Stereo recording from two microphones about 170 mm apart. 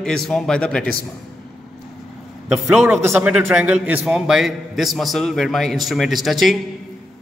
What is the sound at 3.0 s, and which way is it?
Speech, 15° right (ahead or behind).